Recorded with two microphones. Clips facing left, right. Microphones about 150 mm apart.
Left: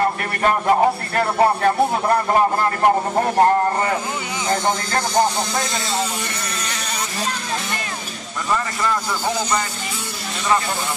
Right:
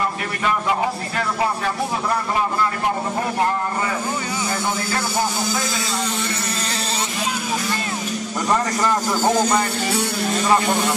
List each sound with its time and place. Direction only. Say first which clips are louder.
0.0 s speech: left 4 dB; 45° left (ahead or behind)
8.5 s speech: right 2 dB; 40° right (ahead or behind)